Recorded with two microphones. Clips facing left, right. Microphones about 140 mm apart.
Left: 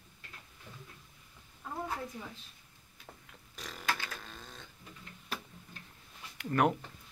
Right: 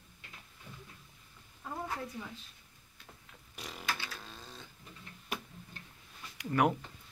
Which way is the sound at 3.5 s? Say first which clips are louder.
Even; 10° right (ahead or behind).